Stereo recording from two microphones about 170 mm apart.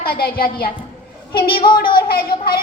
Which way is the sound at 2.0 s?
60° left (ahead or behind).